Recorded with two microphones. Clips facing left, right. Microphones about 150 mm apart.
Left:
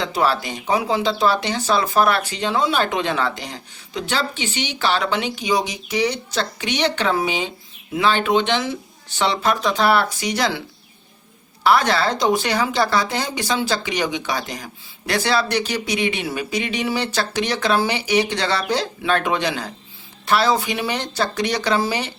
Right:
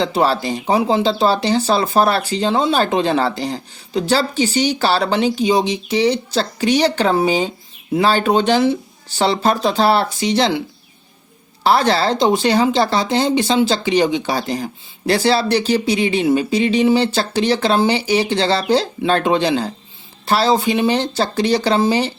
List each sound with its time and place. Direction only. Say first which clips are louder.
0.0 s speech: right 4 dB; 30° right (ahead or behind)
11.6 s speech: right 2 dB; 30° right (ahead or behind)